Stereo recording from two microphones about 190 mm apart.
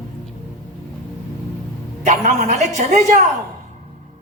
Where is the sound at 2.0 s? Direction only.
35° right (ahead or behind).